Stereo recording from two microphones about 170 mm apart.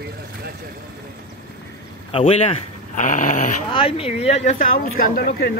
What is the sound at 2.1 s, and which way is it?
Speech, 35° left (ahead or behind).